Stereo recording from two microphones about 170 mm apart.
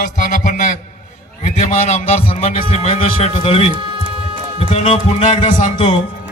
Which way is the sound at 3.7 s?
30° right (ahead or behind).